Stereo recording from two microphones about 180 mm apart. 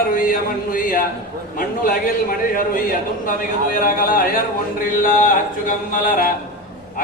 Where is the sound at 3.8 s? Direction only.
50° left (ahead or behind).